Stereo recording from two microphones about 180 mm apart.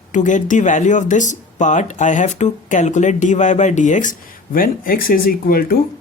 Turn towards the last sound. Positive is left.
turn(degrees=55)  # may be behind; listen again after turning